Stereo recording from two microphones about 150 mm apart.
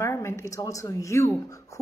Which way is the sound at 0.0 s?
20° left (ahead or behind).